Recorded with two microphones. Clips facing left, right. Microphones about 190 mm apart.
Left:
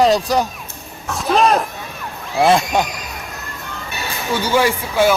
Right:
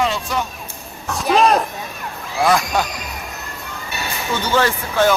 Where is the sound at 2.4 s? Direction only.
25° left (ahead or behind).